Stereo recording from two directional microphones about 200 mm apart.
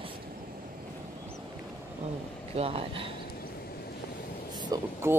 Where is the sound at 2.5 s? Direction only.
30° right (ahead or behind).